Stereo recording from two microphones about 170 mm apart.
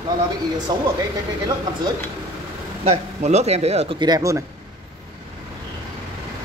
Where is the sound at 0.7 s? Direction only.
25° right (ahead or behind).